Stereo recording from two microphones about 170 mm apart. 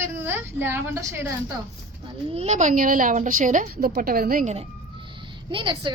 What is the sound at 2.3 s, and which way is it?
A woman's voice, 40° right (ahead or behind).